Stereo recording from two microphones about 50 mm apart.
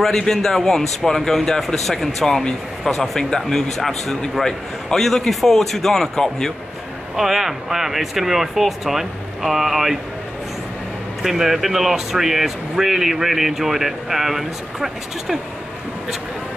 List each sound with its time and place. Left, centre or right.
0.0 s speech: centre
7.2 s speech: centre
11.2 s speech: centre